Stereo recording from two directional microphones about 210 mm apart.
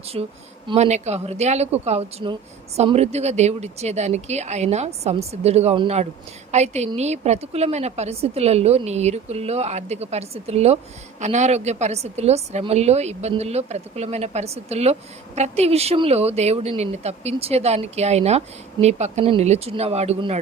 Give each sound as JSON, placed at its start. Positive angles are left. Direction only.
{"t": 0.1, "sound": "speech", "side_deg": -25}